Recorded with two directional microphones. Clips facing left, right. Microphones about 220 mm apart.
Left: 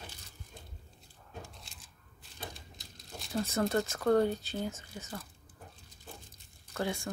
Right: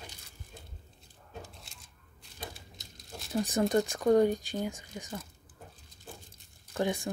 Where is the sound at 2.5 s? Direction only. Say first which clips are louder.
Right 1 dB; centre (ahead or behind).